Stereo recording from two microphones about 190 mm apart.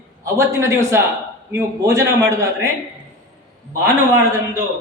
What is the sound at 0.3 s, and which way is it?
A man's voice, 15° right (ahead or behind).